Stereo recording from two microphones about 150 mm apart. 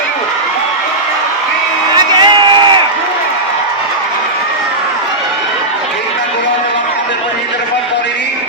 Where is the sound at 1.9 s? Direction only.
30° right (ahead or behind).